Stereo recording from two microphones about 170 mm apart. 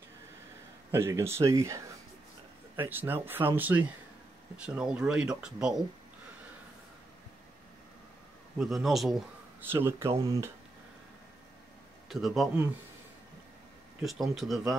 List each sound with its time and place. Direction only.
0.9 s speech: 15° right (ahead or behind)
8.5 s speech: centre (ahead or behind)
9.6 s speech: 15° right (ahead or behind)
12.1 s speech: centre (ahead or behind)
14.0 s speech: centre (ahead or behind)